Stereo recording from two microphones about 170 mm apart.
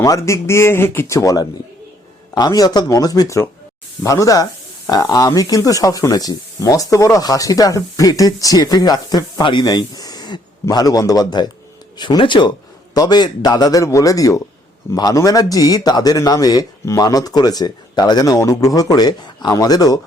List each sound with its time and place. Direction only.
0.0 s speech: 20° left (ahead or behind)